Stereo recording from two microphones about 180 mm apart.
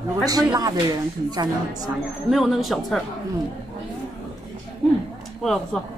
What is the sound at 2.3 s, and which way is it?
Speech, centre (ahead or behind).